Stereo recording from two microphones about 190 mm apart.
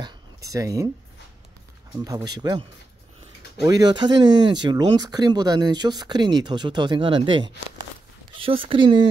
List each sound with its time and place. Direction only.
0.0 s a sound: 15° right (ahead or behind)
2.0 s speech: 20° right (ahead or behind)
3.6 s speech: 20° right (ahead or behind)